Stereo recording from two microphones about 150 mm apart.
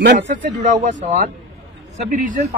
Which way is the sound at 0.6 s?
50° right (ahead or behind).